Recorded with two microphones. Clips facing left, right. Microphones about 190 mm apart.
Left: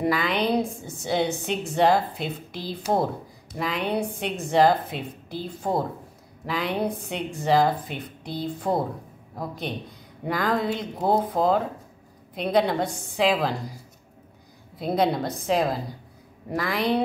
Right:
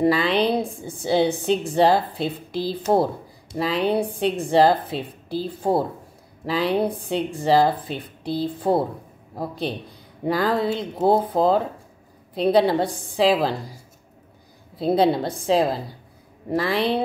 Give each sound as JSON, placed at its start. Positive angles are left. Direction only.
{"t": 0.0, "sound": "a woman's voice", "side_deg": -30}
{"t": 14.8, "sound": "a woman's voice", "side_deg": -30}